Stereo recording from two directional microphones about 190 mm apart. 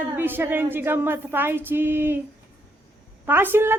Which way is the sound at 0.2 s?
10° right (ahead or behind).